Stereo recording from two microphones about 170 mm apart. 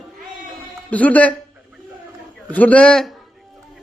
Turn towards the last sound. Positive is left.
turn(degrees=0)  # may be behind; listen again after turning